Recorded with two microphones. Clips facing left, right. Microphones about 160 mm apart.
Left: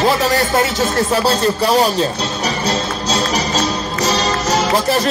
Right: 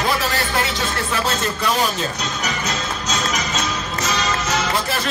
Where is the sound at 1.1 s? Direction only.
35° left (ahead or behind).